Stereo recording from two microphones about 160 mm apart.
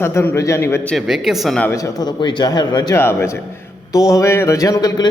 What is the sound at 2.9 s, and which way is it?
A man's voice, 15° left (ahead or behind).